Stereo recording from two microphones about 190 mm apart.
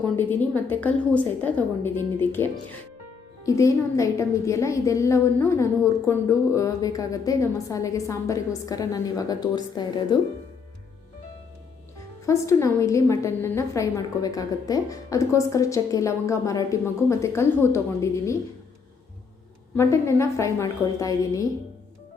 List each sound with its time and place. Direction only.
0.0 s a woman's voice: 10° left (ahead or behind)
12.2 s a woman's voice: 15° left (ahead or behind)
19.7 s a woman's voice: 15° left (ahead or behind)